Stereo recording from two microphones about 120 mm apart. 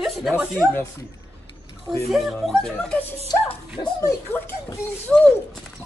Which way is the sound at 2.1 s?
Centre (ahead or behind).